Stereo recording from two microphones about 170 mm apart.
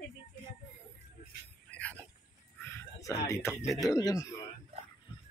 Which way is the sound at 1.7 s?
10° left (ahead or behind).